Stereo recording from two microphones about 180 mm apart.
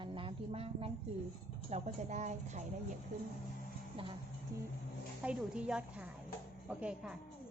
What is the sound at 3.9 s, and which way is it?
Speech, 30° right (ahead or behind).